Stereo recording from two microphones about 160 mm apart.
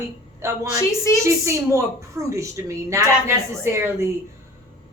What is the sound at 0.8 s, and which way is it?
Speech, 20° left (ahead or behind).